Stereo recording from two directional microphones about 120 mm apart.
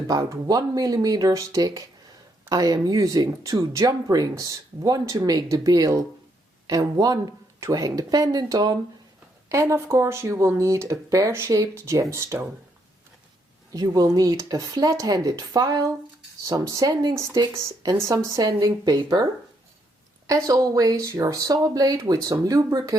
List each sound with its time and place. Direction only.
0.1 s speech: 30° right (ahead or behind)
13.7 s speech: 30° right (ahead or behind)